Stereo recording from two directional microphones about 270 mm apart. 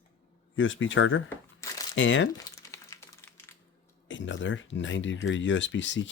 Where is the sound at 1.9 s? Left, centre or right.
Left.